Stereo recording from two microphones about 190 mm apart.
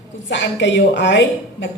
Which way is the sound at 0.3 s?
70° left (ahead or behind).